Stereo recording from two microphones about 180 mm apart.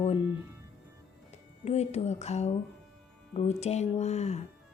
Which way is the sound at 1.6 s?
35° left (ahead or behind).